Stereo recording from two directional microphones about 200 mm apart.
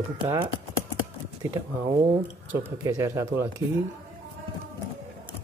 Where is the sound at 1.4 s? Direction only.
10° right (ahead or behind).